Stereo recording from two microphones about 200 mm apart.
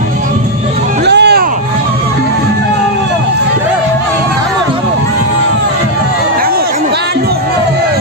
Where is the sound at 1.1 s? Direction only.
55° right (ahead or behind).